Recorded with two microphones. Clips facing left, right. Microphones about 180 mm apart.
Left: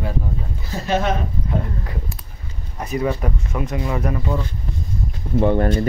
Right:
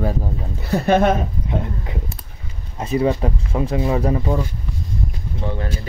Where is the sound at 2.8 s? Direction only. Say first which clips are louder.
Right 3 dB; 25° right (ahead or behind).